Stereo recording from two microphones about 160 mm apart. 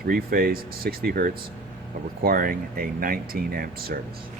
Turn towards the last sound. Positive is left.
turn(degrees=-70)  # may be behind; listen again after turning